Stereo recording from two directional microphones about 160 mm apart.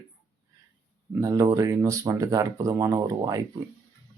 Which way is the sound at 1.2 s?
20° right (ahead or behind).